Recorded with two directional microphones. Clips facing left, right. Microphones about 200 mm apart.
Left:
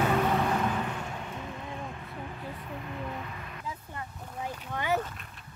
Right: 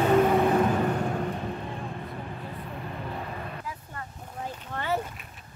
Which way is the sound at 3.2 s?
40° right (ahead or behind).